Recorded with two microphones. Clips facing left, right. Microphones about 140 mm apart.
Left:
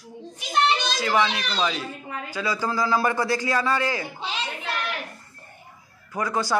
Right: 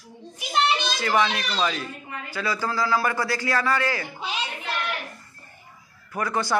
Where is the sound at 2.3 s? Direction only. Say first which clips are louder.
Left 1 dB; 15° left (ahead or behind).